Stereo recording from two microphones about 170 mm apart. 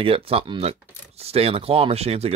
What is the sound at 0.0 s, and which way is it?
Speech, 35° right (ahead or behind).